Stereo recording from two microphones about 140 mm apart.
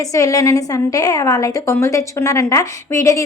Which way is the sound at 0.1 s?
25° left (ahead or behind).